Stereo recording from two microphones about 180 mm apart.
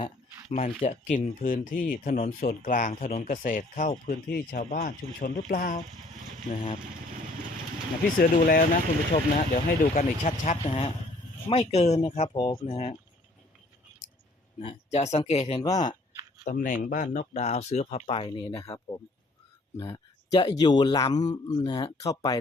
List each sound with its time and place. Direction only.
0.5 s speech: 45° left (ahead or behind)
8.2 s speech: 55° left (ahead or behind); by 13.0 s 35° left (ahead or behind)
14.6 s speech: 35° left (ahead or behind)
15.6 s speech: 20° left (ahead or behind)
16.4 s speech: 50° left (ahead or behind); by 18.6 s 30° left (ahead or behind)
18.6 s speech: 20° left (ahead or behind)
19.7 s a sound: 15° left (ahead or behind)
20.4 s speech: 25° left (ahead or behind)